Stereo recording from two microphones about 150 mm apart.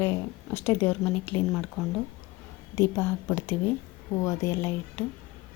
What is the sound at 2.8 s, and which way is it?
A woman's voice, 15° left (ahead or behind).